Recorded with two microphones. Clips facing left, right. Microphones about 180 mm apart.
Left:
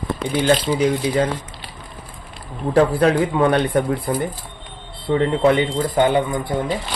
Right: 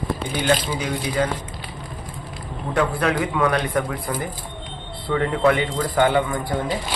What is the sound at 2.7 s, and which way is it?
A man's voice, 35° left (ahead or behind).